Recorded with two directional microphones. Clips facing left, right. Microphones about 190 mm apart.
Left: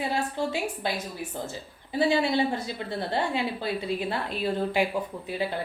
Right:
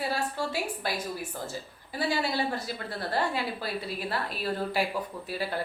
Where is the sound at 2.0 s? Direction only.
25° left (ahead or behind).